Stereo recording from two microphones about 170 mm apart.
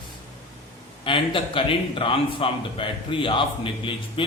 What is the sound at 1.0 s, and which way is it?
A man's voice, 30° left (ahead or behind).